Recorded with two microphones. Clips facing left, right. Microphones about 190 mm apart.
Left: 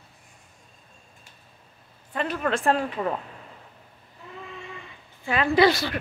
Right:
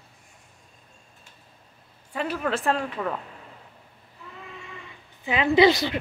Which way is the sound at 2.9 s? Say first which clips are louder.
Left 2 dB; 15° left (ahead or behind).